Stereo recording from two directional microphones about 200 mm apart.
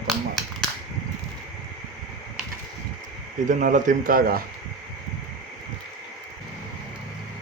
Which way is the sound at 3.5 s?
40° right (ahead or behind).